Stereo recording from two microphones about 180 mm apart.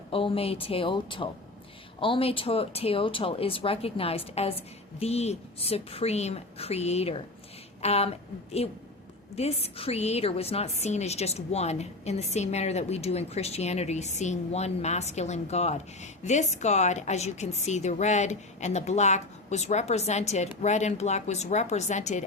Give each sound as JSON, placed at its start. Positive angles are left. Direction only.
{"t": 0.1, "sound": "a woman's voice", "side_deg": 30}